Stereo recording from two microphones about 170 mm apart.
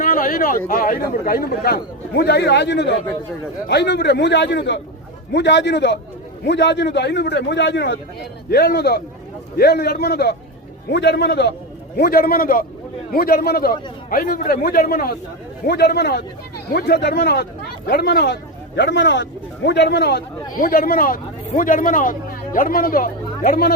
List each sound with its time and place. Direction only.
0.0 s a sound: 55° left (ahead or behind)
0.7 s a man's voice: 55° left (ahead or behind); by 7.9 s 90° left
8.4 s a man's voice: 65° left (ahead or behind); by 11.5 s 80° left
11.9 s a man's voice: 65° left (ahead or behind)
18.8 s speech: 90° left; by 23.7 s 60° left (ahead or behind)